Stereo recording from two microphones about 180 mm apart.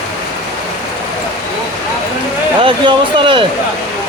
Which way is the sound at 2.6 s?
30° right (ahead or behind).